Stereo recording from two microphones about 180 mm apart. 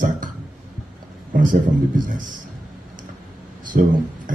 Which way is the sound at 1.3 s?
50° right (ahead or behind).